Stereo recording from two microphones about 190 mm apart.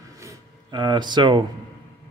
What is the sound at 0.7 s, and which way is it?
Speech, 25° right (ahead or behind).